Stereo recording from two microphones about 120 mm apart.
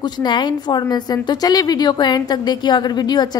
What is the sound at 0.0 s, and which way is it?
A woman's voice, 40° left (ahead or behind).